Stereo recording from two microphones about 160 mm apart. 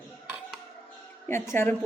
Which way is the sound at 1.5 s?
15° left (ahead or behind).